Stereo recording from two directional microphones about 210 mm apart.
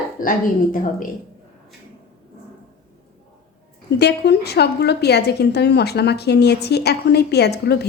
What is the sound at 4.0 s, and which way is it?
A woman's voice, 50° left (ahead or behind).